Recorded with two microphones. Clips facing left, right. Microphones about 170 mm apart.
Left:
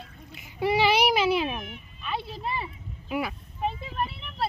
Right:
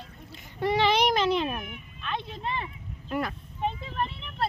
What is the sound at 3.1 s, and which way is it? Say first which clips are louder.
Vehicle: left 1 dB; 5° left (ahead or behind).